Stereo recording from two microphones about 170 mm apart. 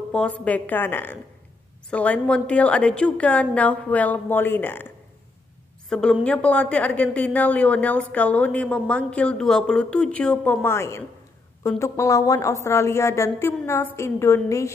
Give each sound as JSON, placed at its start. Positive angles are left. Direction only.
{"t": 0.1, "sound": "a woman's voice", "side_deg": 5}
{"t": 5.9, "sound": "a woman's voice", "side_deg": 5}